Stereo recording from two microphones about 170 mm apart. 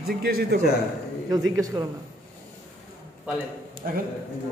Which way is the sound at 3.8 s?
55° right (ahead or behind).